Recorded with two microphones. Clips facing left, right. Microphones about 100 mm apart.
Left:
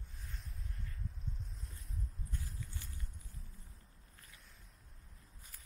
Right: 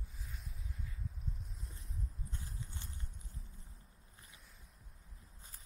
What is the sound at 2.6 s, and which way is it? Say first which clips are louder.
Clip-clop: even; 25° right (ahead or behind).